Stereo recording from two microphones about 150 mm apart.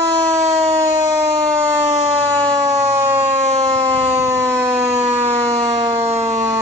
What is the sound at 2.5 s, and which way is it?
Siren, 25° right (ahead or behind).